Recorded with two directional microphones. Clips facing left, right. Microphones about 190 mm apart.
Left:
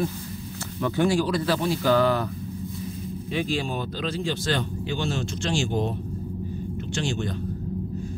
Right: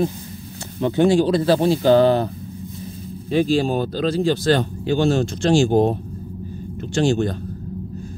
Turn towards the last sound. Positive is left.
turn(degrees=-40)  # may be behind; listen again after turning